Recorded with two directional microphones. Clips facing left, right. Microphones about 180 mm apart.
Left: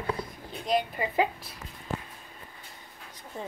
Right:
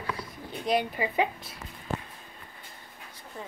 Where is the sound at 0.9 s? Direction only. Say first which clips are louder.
Even; 5° right (ahead or behind).